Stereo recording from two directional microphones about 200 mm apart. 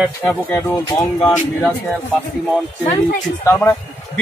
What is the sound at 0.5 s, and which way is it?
Speech, 20° left (ahead or behind).